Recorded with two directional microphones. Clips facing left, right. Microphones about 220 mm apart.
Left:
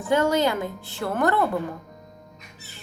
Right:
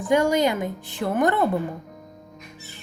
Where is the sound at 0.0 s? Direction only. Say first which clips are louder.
Right 1 dB; 15° right (ahead or behind).